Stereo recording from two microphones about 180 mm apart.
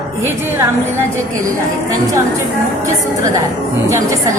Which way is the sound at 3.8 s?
15° right (ahead or behind).